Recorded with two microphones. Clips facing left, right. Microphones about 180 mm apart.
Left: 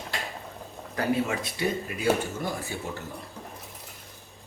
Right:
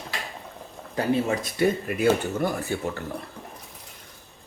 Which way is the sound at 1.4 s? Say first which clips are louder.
Right 6 dB; 50° right (ahead or behind).